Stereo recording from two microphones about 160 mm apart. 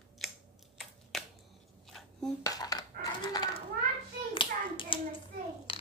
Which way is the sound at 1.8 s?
Centre (ahead or behind).